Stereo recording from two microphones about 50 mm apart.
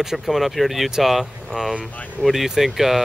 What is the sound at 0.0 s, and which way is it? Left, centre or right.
Speech, centre.